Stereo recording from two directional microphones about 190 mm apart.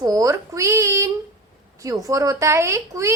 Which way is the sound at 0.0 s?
20° right (ahead or behind).